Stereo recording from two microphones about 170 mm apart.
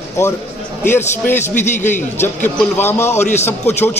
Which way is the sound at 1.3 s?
45° left (ahead or behind).